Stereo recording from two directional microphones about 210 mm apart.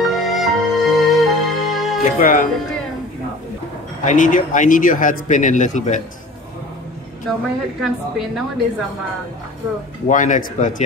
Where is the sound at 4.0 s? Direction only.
35° left (ahead or behind).